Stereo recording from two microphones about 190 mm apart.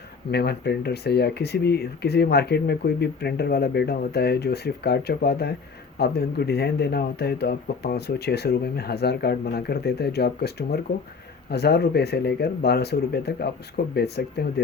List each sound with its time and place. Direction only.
0.3 s speech: 60° left (ahead or behind)